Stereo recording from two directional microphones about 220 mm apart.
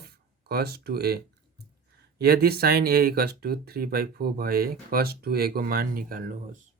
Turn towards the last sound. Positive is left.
turn(degrees=-40)  # may be behind; listen again after turning